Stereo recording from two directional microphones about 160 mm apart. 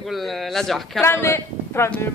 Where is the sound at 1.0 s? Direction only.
15° left (ahead or behind).